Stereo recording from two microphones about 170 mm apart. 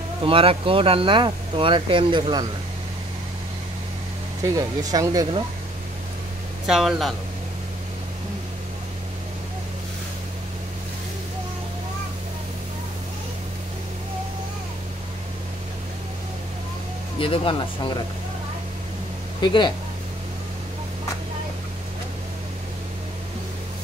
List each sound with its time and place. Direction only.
0.2 s speech: 30° right (ahead or behind)
4.4 s speech: 20° right (ahead or behind)
6.7 s speech: centre (ahead or behind)
17.2 s speech: 30° left (ahead or behind)
19.4 s speech: 25° left (ahead or behind)